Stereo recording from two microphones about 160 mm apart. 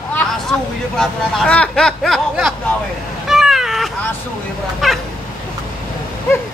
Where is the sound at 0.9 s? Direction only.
5° left (ahead or behind).